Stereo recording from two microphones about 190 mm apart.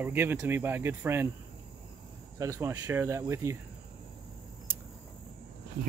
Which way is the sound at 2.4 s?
15° right (ahead or behind).